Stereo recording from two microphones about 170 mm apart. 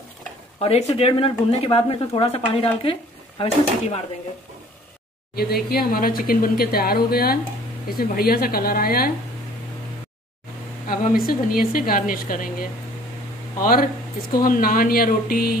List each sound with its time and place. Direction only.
0.6 s speech: 40° left (ahead or behind)
5.3 s speech: 65° left (ahead or behind)
10.9 s speech: 60° left (ahead or behind)